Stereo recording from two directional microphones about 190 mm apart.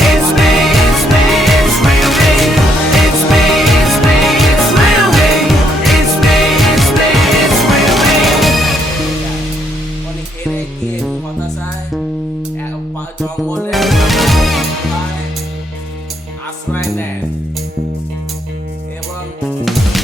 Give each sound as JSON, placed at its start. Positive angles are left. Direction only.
{"t": 0.0, "sound": "music", "side_deg": 0}
{"t": 13.2, "sound": "music", "side_deg": 0}